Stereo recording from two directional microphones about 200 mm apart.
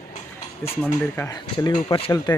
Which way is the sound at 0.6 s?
10° left (ahead or behind).